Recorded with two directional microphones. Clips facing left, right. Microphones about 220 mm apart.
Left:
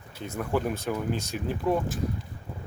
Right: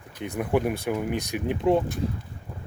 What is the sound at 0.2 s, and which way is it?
Speech, 15° right (ahead or behind).